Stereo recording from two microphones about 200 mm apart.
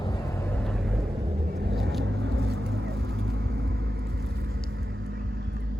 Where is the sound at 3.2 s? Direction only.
55° right (ahead or behind).